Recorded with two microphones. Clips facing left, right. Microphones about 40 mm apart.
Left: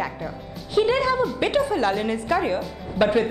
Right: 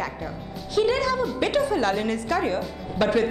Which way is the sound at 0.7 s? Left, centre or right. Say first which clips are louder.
Left 2 dB; left.